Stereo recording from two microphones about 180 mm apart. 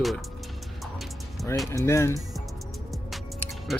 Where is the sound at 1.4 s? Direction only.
Centre (ahead or behind).